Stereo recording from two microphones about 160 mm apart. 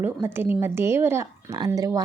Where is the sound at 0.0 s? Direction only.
15° right (ahead or behind).